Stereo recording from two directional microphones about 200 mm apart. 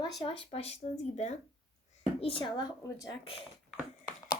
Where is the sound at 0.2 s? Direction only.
30° left (ahead or behind).